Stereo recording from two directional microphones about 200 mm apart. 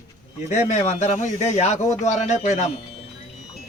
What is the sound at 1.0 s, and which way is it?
Speech, 35° left (ahead or behind).